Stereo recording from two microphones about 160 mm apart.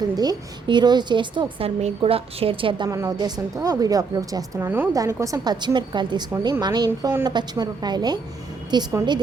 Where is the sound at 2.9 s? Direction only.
20° right (ahead or behind).